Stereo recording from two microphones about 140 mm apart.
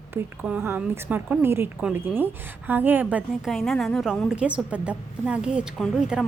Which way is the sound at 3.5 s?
Centre (ahead or behind).